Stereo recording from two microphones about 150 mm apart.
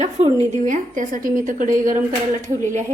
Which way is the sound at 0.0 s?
50° right (ahead or behind).